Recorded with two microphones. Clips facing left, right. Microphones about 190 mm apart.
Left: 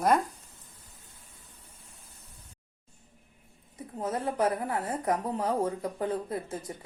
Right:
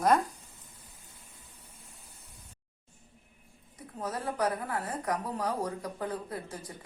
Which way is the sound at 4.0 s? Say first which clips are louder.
Left 3 dB; 25° left (ahead or behind).